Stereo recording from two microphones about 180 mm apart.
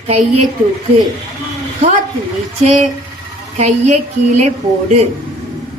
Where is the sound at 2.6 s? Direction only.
40° right (ahead or behind).